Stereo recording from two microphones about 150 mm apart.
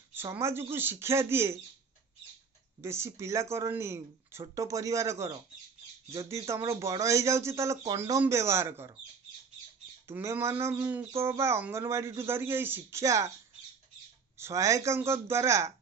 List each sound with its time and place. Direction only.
0.1 s speech: 15° right (ahead or behind)
2.8 s speech: 15° right (ahead or behind)
10.1 s speech: 15° right (ahead or behind)
14.3 s speech: 20° right (ahead or behind)